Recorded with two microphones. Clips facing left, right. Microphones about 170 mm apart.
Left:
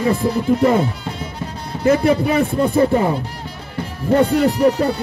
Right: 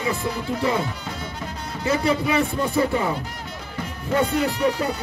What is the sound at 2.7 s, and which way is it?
Speech, 40° left (ahead or behind).